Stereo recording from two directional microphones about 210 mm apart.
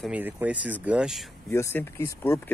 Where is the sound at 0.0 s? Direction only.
5° right (ahead or behind).